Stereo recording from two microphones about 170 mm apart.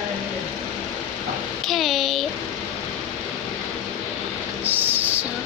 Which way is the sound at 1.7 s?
Centre (ahead or behind).